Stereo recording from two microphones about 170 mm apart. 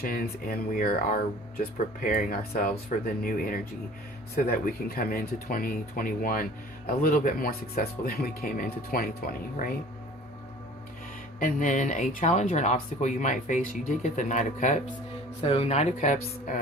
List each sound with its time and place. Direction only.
0.0 s speech: 60° left (ahead or behind)
4.4 s speech: 60° left (ahead or behind)
11.3 s speech: 50° left (ahead or behind)
15.4 s speech: 35° left (ahead or behind); by 16.6 s 50° left (ahead or behind)